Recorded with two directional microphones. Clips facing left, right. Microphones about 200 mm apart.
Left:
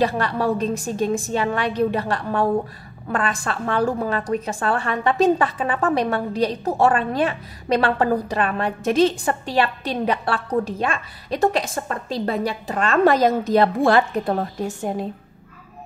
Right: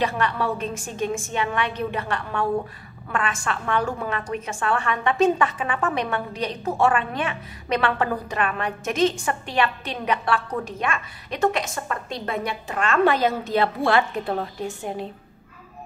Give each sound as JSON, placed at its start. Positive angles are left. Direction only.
{"t": 0.0, "sound": "a woman's voice", "side_deg": 35}